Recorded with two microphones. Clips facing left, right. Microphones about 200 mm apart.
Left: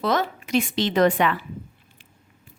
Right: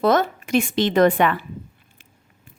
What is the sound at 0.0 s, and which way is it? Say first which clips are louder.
Speech: right 5 dB; 50° right (ahead or behind).